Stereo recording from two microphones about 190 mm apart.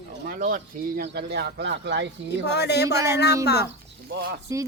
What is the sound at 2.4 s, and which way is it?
Speech, 60° left (ahead or behind).